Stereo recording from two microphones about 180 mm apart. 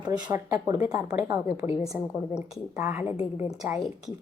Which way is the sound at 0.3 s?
20° right (ahead or behind).